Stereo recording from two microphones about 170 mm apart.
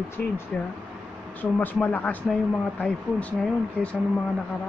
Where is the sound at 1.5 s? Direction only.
10° left (ahead or behind).